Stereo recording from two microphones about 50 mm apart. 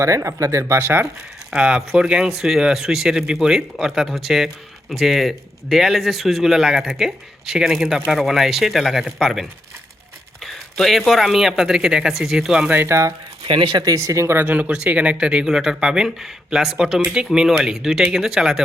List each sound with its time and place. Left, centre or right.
0.0 s speech: right
0.7 s speech: right
1.5 s speech: right
12.8 s speech: right
14.0 s speech: right
14.5 s speech: right
15.4 s speech: centre